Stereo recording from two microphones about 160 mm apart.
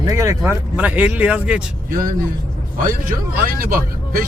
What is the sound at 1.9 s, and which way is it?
Speech, 60° right (ahead or behind).